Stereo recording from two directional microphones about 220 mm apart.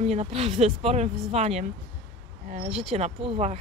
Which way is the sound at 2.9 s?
30° right (ahead or behind).